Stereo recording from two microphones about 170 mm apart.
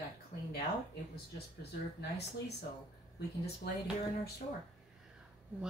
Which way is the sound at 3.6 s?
75° left (ahead or behind).